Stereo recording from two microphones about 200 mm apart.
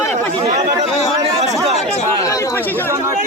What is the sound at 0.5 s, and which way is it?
Chatter, 15° right (ahead or behind).